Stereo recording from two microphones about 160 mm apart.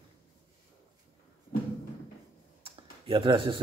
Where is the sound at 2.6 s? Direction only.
35° right (ahead or behind).